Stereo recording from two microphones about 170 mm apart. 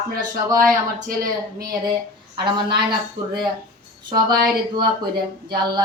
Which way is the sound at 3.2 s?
25° right (ahead or behind).